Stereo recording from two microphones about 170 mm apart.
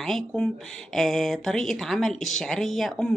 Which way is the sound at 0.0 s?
Centre (ahead or behind).